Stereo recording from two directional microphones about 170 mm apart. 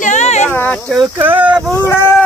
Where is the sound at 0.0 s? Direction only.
45° left (ahead or behind).